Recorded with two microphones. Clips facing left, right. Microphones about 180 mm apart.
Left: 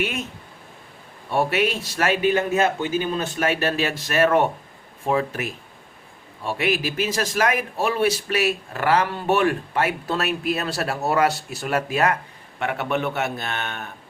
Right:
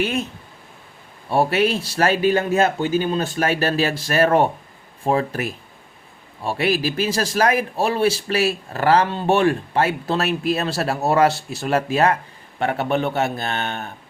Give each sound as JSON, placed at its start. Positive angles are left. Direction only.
{"t": 0.0, "sound": "a man's voice", "side_deg": -30}
{"t": 1.3, "sound": "a man's voice", "side_deg": -30}